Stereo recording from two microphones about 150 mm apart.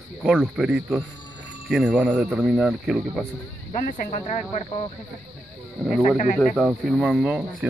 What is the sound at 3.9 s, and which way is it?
Speech, 60° left (ahead or behind).